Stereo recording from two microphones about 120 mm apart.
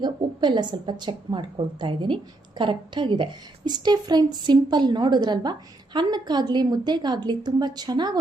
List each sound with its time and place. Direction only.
0.0 s a woman's voice: 40° right (ahead or behind)